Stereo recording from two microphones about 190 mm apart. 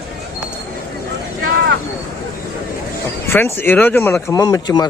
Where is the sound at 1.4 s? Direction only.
55° right (ahead or behind).